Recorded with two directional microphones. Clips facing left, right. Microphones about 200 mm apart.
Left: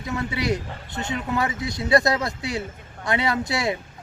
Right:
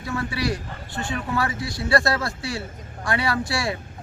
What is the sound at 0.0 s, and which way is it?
Speech, 20° left (ahead or behind).